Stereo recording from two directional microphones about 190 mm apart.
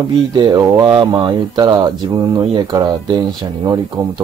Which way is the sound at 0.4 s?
20° right (ahead or behind).